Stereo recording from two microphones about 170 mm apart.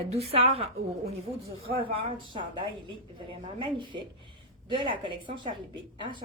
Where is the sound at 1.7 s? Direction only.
30° right (ahead or behind).